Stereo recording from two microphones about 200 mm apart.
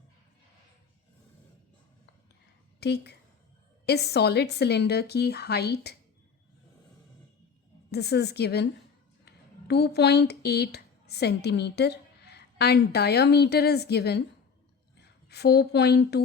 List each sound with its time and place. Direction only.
2.8 s a woman's voice: 55° left (ahead or behind)
7.9 s a woman's voice: 55° left (ahead or behind)